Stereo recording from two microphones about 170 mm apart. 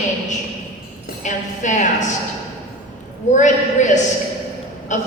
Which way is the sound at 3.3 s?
45° left (ahead or behind).